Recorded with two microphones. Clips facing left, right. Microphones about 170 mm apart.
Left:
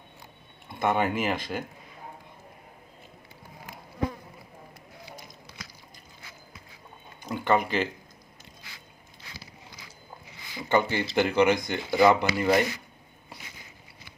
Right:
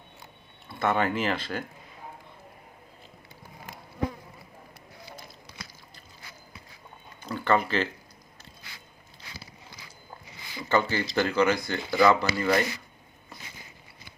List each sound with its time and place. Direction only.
0.8 s speech: 15° left (ahead or behind)
7.2 s a sound: 15° left (ahead or behind)
10.6 s speech: 15° left (ahead or behind)